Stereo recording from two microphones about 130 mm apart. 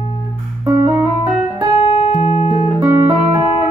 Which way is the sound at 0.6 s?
25° right (ahead or behind).